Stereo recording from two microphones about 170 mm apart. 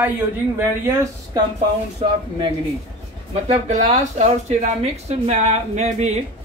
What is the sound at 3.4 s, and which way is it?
Speech, 45° right (ahead or behind).